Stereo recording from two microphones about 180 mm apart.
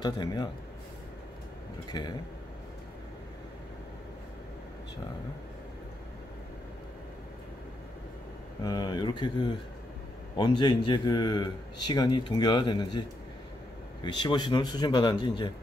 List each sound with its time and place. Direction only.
0.0 s speech: 25° left (ahead or behind)
1.9 s speech: 20° left (ahead or behind)
8.6 s speech: 25° left (ahead or behind)
14.0 s speech: 25° left (ahead or behind)